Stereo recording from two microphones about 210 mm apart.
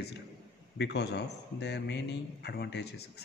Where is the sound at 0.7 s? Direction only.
55° left (ahead or behind).